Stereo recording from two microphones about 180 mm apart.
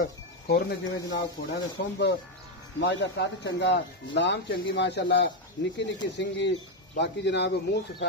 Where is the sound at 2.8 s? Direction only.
75° left (ahead or behind).